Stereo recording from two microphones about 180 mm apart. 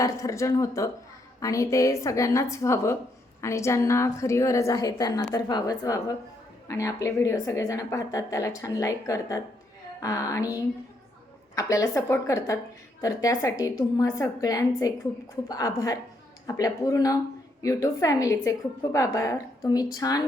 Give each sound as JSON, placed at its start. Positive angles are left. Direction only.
{"t": 0.0, "sound": "a woman's voice", "side_deg": 20}